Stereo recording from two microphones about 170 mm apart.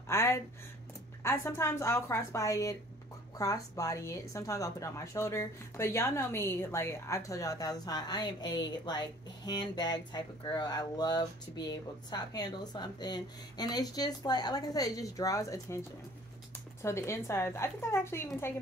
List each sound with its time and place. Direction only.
0.1 s a sound: 15° left (ahead or behind)
1.2 s a woman's voice: 15° left (ahead or behind)
16.8 s a woman's voice: 15° left (ahead or behind)